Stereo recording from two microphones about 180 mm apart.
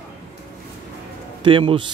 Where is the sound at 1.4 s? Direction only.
30° right (ahead or behind).